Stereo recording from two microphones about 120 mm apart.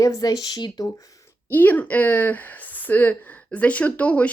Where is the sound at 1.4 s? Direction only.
15° left (ahead or behind).